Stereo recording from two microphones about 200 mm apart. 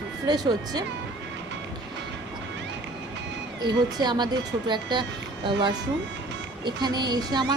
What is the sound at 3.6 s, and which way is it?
A woman's voice, 20° right (ahead or behind).